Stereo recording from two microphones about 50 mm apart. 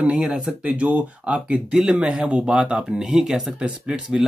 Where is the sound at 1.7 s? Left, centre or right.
Centre.